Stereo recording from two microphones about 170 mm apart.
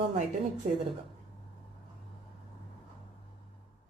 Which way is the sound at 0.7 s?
45° right (ahead or behind).